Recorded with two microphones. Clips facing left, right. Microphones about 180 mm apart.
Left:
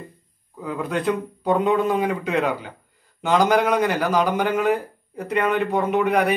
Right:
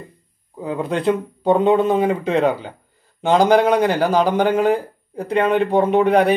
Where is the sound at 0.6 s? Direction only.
25° right (ahead or behind).